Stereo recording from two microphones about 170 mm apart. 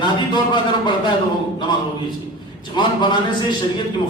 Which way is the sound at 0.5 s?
25° left (ahead or behind).